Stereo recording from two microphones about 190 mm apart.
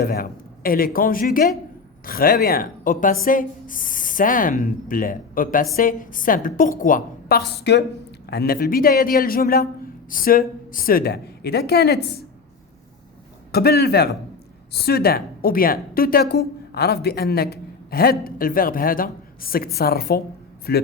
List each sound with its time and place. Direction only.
0.0 s a man's voice: 50° left (ahead or behind)
13.5 s a woman's voice: 55° left (ahead or behind)